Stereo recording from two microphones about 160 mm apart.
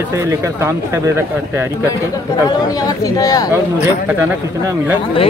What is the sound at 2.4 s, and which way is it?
Speech, 25° left (ahead or behind).